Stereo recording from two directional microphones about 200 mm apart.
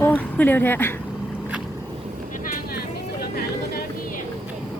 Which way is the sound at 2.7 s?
50° left (ahead or behind).